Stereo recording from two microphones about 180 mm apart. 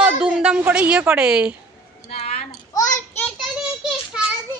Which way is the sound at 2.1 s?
40° left (ahead or behind).